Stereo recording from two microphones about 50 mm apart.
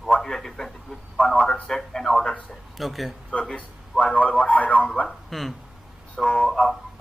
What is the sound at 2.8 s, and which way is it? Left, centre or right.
Speech, centre.